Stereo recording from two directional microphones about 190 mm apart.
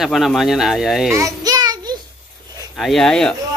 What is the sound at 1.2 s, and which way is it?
Child singing, 20° right (ahead or behind).